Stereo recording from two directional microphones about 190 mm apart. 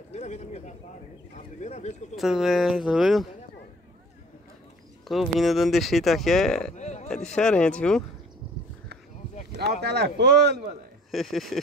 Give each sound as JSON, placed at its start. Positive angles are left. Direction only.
{"t": 0.1, "sound": "a sound", "side_deg": 35}
{"t": 2.1, "sound": "speech", "side_deg": 0}
{"t": 5.0, "sound": "speech", "side_deg": 0}
{"t": 6.7, "sound": "a sound", "side_deg": 40}
{"t": 7.3, "sound": "speech", "side_deg": 5}
{"t": 9.5, "sound": "speech", "side_deg": -60}
{"t": 11.1, "sound": "speech", "side_deg": 0}